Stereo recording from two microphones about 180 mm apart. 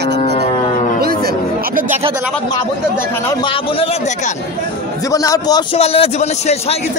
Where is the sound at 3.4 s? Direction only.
30° left (ahead or behind).